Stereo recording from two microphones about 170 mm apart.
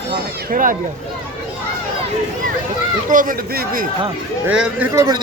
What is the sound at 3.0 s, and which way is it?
Speech, 55° right (ahead or behind).